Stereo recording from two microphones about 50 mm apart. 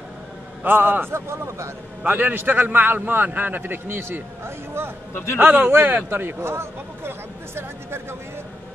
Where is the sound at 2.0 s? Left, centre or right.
Right.